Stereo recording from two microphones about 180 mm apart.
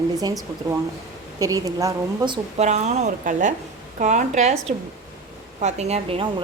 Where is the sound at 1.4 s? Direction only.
20° right (ahead or behind).